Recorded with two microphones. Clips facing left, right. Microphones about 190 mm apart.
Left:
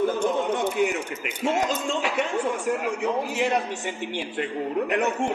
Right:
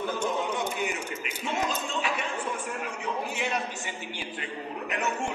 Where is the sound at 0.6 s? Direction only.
70° left (ahead or behind).